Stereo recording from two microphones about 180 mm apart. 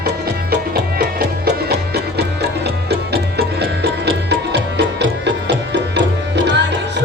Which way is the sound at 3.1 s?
60° right (ahead or behind).